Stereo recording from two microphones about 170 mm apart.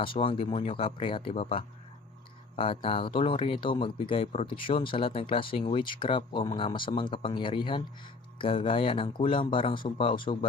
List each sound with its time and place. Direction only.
0.0 s speech: 30° left (ahead or behind)